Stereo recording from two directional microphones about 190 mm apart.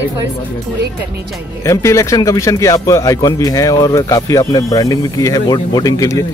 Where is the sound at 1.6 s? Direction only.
15° left (ahead or behind).